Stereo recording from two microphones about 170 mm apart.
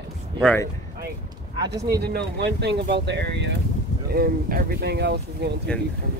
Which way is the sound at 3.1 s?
90° right.